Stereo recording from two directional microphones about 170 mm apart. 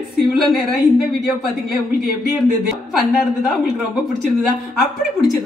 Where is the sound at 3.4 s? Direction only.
Centre (ahead or behind).